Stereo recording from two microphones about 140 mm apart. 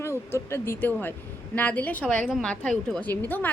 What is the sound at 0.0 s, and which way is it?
A woman's voice, 20° left (ahead or behind).